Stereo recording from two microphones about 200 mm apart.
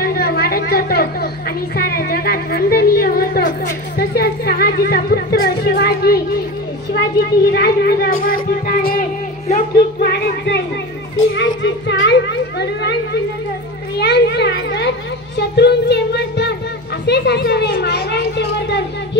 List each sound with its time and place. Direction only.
0.0 s a sound: 50° left (ahead or behind)
1.8 s music: 50° left (ahead or behind)
6.9 s speech: 50° left (ahead or behind)
9.8 s music: 55° left (ahead or behind)
11.3 s a child's voice: 65° left (ahead or behind)